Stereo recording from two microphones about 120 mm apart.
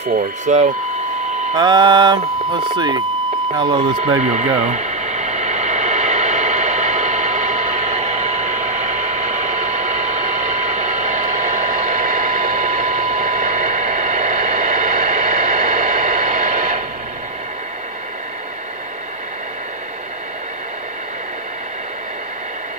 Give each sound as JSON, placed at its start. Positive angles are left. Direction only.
{"t": 0.0, "sound": "speech", "side_deg": -80}
{"t": 1.5, "sound": "speech", "side_deg": -40}
{"t": 4.2, "sound": "a sound", "side_deg": -75}